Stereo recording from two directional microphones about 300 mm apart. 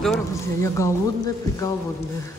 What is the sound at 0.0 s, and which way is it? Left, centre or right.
Speech, centre.